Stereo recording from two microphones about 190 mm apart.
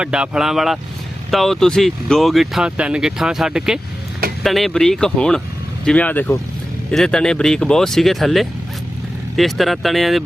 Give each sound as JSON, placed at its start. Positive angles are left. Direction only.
{"t": 0.0, "sound": "speech", "side_deg": -5}